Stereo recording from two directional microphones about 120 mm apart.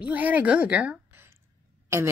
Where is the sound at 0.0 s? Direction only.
10° right (ahead or behind).